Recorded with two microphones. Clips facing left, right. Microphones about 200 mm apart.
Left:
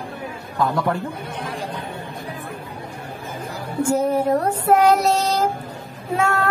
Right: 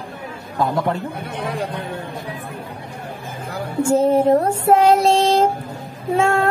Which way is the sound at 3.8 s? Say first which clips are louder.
Right 4 dB; 25° right (ahead or behind).